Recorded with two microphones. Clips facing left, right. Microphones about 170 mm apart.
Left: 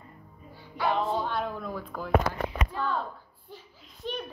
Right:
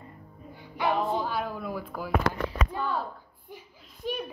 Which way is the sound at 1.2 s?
5° right (ahead or behind).